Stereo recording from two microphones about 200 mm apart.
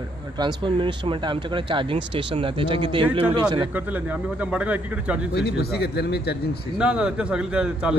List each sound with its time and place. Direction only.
0.4 s speech: 25° right (ahead or behind)
3.7 s speech: 10° right (ahead or behind)
5.3 s speech: 55° left (ahead or behind)
6.8 s a man's voice: 5° right (ahead or behind)